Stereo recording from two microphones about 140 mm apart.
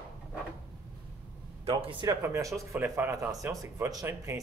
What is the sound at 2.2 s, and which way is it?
Speech, 20° right (ahead or behind).